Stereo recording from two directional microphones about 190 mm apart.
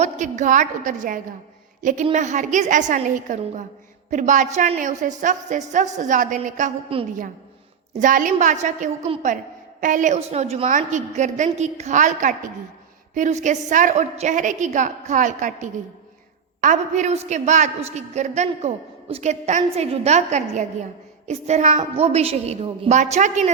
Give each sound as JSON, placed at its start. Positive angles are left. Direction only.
{"t": 0.0, "sound": "a woman's voice", "side_deg": -40}
{"t": 6.9, "sound": "a woman's voice", "side_deg": -30}
{"t": 7.9, "sound": "a woman's voice", "side_deg": -45}